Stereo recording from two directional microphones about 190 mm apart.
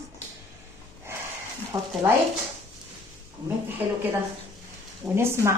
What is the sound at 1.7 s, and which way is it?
Speech, 15° right (ahead or behind).